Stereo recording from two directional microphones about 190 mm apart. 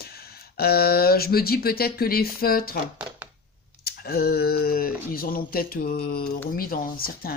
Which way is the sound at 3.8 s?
55° left (ahead or behind).